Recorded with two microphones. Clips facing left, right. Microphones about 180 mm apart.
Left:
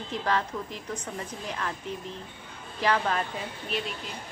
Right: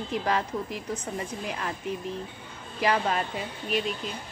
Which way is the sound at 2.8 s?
10° right (ahead or behind).